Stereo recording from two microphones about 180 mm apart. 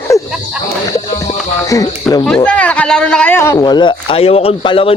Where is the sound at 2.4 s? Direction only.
5° left (ahead or behind).